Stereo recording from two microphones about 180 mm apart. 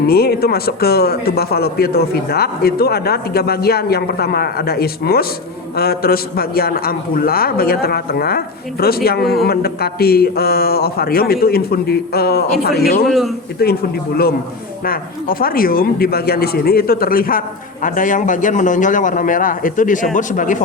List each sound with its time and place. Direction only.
0.1 s speech: 60° left (ahead or behind)
13.1 s a man's voice: centre (ahead or behind)
13.6 s speech: 60° left (ahead or behind)
14.8 s a man's voice: 55° left (ahead or behind)